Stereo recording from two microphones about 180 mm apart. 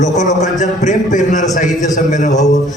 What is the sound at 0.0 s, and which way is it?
A man's voice, 40° left (ahead or behind).